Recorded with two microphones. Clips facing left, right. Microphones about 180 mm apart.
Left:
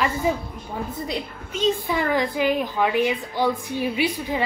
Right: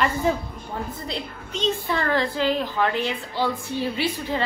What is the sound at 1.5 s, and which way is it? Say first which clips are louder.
A woman's voice: left 2 dB; 10° left (ahead or behind).